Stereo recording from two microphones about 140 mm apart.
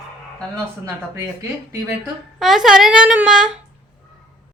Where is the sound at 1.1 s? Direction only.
25° right (ahead or behind).